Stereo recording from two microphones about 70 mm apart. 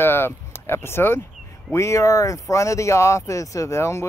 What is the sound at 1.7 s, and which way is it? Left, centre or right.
Speech, left.